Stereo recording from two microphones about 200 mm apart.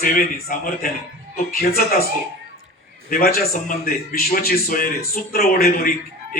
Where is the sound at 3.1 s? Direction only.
45° left (ahead or behind).